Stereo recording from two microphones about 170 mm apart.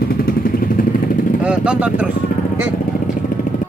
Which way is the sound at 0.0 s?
60° left (ahead or behind).